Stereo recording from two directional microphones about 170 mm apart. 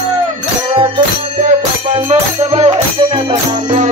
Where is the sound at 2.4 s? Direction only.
35° right (ahead or behind).